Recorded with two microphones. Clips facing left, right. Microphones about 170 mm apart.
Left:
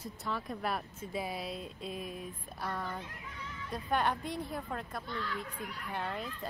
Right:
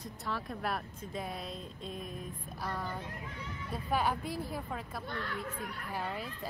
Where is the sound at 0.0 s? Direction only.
Centre (ahead or behind).